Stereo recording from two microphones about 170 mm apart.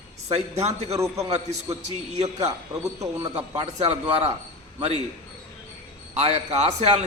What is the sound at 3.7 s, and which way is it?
Speech, 40° right (ahead or behind).